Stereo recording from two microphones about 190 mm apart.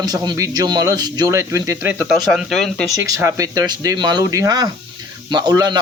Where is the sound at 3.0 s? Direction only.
15° right (ahead or behind).